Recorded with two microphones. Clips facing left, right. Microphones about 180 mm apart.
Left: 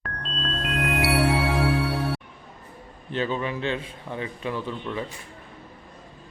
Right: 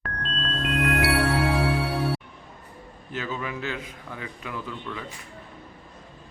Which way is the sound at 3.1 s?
30° left (ahead or behind).